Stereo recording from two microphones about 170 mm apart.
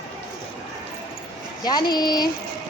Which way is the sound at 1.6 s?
25° left (ahead or behind).